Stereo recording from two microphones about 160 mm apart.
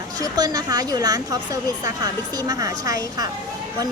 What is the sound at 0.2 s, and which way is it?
A woman's voice, 25° right (ahead or behind).